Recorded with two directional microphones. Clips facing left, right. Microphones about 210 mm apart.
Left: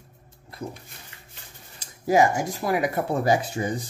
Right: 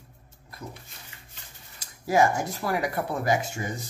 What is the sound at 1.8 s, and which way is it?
Speech, 15° left (ahead or behind).